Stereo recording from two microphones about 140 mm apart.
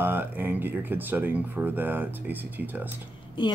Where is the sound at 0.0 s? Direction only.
15° right (ahead or behind).